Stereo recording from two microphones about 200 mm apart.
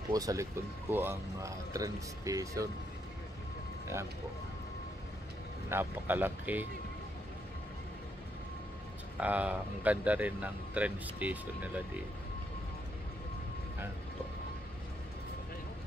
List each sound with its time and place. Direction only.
0.1 s speech: 15° right (ahead or behind)
5.7 s speech: 10° right (ahead or behind)
9.2 s speech: 5° right (ahead or behind)